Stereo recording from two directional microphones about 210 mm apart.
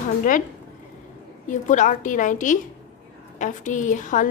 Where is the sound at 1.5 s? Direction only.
35° left (ahead or behind).